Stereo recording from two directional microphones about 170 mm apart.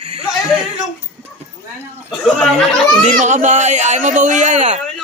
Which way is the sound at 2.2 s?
5° left (ahead or behind).